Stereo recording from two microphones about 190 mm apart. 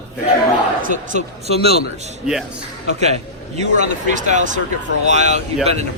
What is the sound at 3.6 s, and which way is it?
Speech, 40° right (ahead or behind).